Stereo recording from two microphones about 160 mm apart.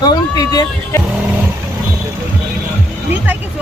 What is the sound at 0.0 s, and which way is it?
Speech, 25° left (ahead or behind).